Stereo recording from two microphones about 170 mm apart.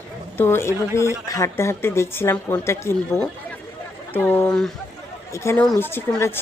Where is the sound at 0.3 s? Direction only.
15° left (ahead or behind).